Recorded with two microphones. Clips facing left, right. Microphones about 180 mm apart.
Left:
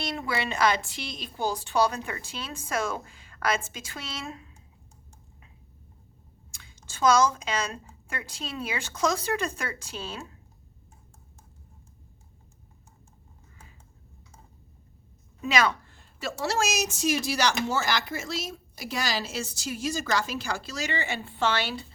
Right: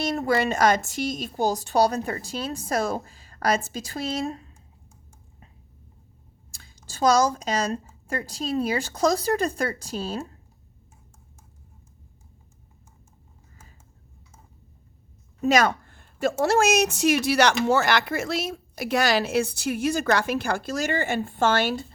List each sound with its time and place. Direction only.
0.0 s a woman's voice: 45° right (ahead or behind)
6.5 s a woman's voice: 35° right (ahead or behind)
15.4 s a woman's voice: 45° right (ahead or behind)